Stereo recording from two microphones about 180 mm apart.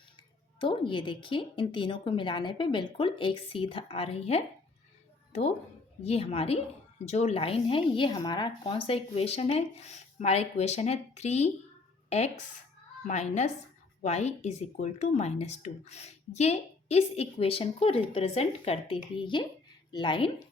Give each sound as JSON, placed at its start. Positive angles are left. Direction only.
{"t": 0.2, "sound": "a woman's voice", "side_deg": 25}